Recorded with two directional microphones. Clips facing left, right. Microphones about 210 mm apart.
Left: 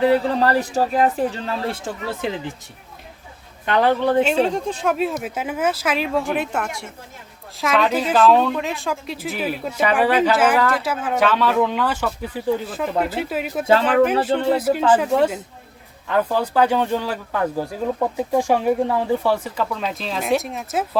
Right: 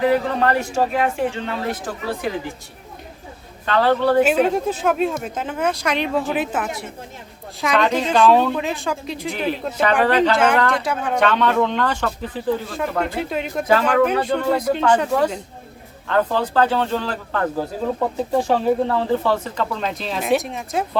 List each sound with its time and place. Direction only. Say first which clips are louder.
0.0 s a man's voice: left 1 dB; 30° left (ahead or behind)
1.8 s speech: right 1 dB; 25° left (ahead or behind)
3.7 s speech: right 1 dB; 20° left (ahead or behind)
4.4 s a woman's voice: right 2 dB; 5° right (ahead or behind)